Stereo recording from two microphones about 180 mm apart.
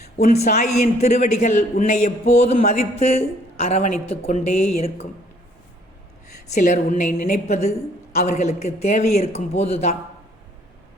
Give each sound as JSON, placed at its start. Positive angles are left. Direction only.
{"t": 0.2, "sound": "a man's voice", "side_deg": 45}
{"t": 6.5, "sound": "a woman's voice", "side_deg": 45}
{"t": 7.3, "sound": "a man's voice", "side_deg": 40}